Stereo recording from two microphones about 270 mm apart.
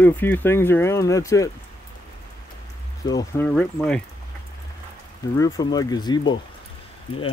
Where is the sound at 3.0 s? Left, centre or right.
Centre.